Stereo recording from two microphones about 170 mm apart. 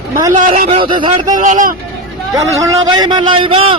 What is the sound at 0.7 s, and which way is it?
Speech, 30° right (ahead or behind).